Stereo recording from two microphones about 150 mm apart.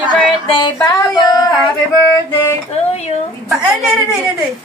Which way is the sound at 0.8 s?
25° left (ahead or behind).